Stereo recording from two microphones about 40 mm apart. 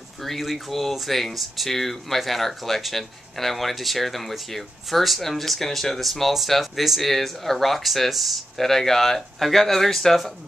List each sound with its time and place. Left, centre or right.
0.2 s speech: centre